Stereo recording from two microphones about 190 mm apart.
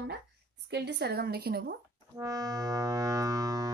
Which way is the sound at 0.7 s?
60° right (ahead or behind).